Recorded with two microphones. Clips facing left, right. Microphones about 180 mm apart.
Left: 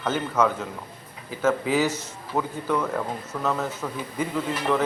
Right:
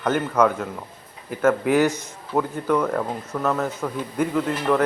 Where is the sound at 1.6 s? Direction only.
55° right (ahead or behind).